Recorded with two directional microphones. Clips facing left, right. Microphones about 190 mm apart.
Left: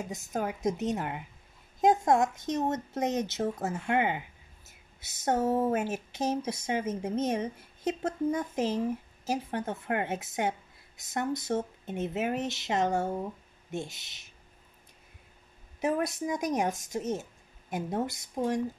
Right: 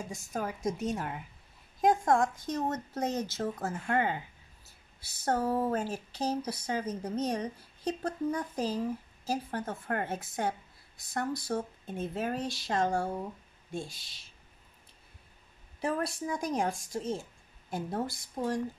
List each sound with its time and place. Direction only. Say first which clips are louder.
0.0 s speech: left 3 dB; 20° left (ahead or behind)
5.2 s speech: left 3 dB; 25° left (ahead or behind)
15.8 s speech: left 3 dB; 20° left (ahead or behind)